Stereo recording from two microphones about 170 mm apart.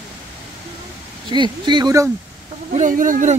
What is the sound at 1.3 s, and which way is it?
Speech, 25° right (ahead or behind).